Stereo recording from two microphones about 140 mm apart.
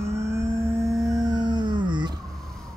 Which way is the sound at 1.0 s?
25° right (ahead or behind).